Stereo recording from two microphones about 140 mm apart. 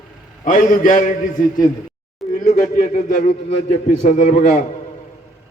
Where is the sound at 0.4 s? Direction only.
70° left (ahead or behind).